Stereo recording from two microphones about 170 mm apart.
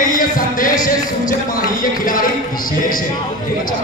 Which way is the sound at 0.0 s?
55° left (ahead or behind).